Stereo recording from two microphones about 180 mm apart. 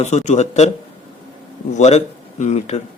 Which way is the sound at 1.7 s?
40° left (ahead or behind).